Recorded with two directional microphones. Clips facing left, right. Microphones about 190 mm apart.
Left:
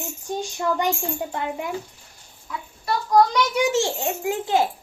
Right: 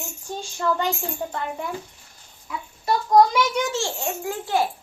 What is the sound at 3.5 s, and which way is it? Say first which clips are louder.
A child's voice: left 4 dB; 15° left (ahead or behind).